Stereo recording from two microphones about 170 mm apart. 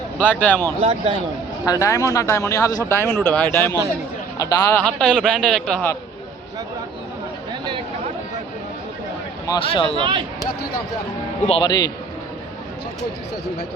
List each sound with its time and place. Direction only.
0.2 s speech: 10° left (ahead or behind)
0.8 s speech: 35° right (ahead or behind)
1.6 s speech: 20° left (ahead or behind)
4.8 s a man's voice: 5° left (ahead or behind)
9.6 s speech: 30° left (ahead or behind)
10.0 s speech: 30° right (ahead or behind)
11.4 s speech: 30° left (ahead or behind)